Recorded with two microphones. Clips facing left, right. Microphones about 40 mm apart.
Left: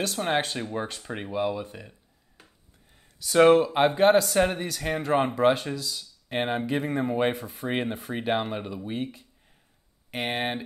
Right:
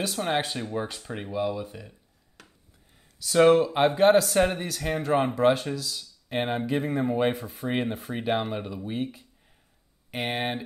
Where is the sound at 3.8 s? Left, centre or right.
Centre.